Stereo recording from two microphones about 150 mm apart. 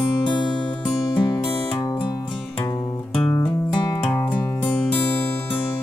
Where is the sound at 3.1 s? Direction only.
10° left (ahead or behind).